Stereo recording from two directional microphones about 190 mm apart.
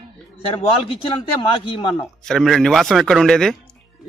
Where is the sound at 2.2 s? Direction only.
Centre (ahead or behind).